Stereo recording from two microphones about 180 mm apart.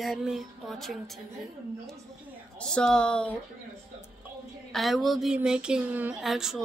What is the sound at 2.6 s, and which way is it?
Speech, 5° left (ahead or behind).